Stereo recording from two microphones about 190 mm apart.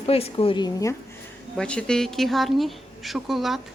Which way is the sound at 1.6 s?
5° left (ahead or behind).